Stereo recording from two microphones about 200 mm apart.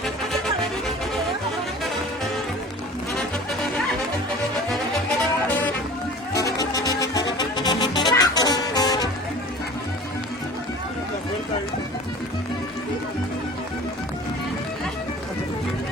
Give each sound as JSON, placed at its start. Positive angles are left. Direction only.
{"t": 6.3, "sound": "music", "side_deg": 15}